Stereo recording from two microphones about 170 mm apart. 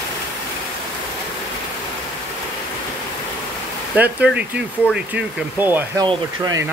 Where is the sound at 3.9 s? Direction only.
10° right (ahead or behind).